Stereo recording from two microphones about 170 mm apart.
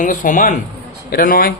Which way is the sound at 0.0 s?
50° left (ahead or behind).